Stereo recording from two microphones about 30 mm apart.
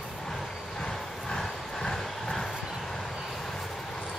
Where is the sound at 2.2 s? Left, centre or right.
Centre.